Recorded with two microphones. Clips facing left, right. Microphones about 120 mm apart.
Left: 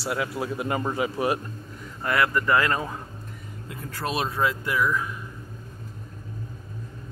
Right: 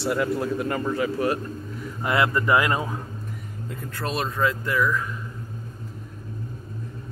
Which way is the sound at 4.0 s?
10° left (ahead or behind).